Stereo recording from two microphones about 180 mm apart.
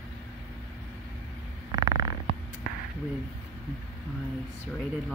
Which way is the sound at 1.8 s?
20° right (ahead or behind).